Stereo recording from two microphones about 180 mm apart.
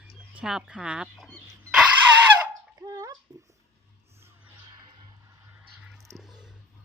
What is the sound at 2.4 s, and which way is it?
Fowl, 15° right (ahead or behind).